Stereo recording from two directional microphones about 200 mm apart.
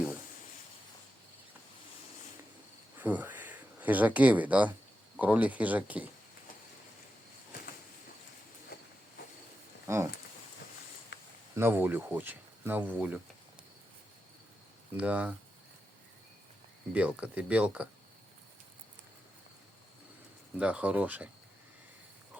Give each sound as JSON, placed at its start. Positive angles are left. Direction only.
{"t": 3.0, "sound": "speech", "side_deg": -10}
{"t": 8.7, "sound": "train", "side_deg": 50}
{"t": 9.8, "sound": "a sound", "side_deg": -15}
{"t": 11.1, "sound": "a sound", "side_deg": 60}
{"t": 11.5, "sound": "speech", "side_deg": -10}
{"t": 14.9, "sound": "speech", "side_deg": -5}
{"t": 16.9, "sound": "speech", "side_deg": -5}
{"t": 20.6, "sound": "speech", "side_deg": -5}